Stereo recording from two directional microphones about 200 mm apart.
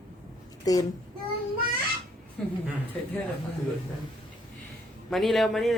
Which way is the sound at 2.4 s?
5° left (ahead or behind).